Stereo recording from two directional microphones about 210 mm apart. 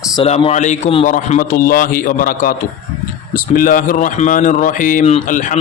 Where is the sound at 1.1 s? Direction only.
40° left (ahead or behind).